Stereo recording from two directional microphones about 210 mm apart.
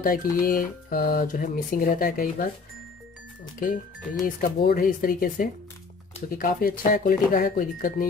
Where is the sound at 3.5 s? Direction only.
40° left (ahead or behind).